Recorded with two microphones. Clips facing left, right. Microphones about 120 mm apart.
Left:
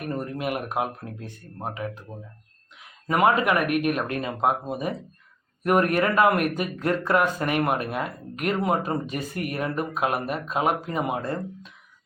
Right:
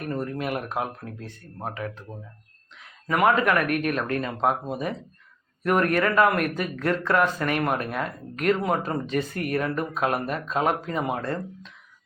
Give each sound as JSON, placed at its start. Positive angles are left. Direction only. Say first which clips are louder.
{"t": 0.0, "sound": "speech", "louder": "even", "side_deg": 20}
{"t": 3.1, "sound": "speech", "louder": "even", "side_deg": 20}